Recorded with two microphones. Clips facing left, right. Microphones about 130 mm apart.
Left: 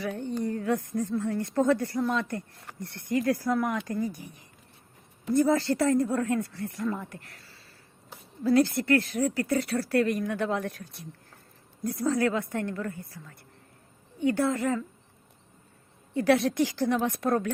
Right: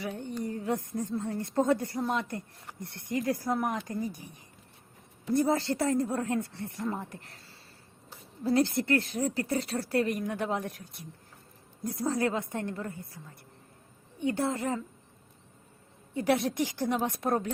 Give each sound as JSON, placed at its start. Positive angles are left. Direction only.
{"t": 0.4, "sound": "speech", "side_deg": -20}
{"t": 5.4, "sound": "speech", "side_deg": -20}
{"t": 14.2, "sound": "speech", "side_deg": -25}
{"t": 16.1, "sound": "speech", "side_deg": -20}